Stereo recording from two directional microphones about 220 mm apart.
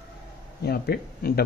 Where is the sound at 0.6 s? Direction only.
45° left (ahead or behind).